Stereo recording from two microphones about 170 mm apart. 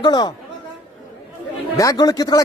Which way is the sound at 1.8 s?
20° left (ahead or behind).